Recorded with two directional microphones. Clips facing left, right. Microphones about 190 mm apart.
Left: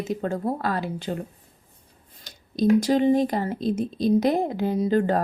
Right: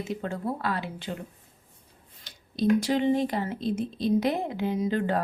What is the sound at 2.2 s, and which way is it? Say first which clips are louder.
Speech: left 4 dB; 40° left (ahead or behind).